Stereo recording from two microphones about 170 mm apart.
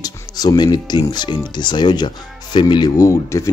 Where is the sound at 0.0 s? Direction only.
25° left (ahead or behind).